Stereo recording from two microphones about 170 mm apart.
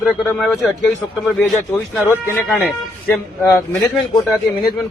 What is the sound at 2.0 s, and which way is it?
A man's voice, 10° left (ahead or behind).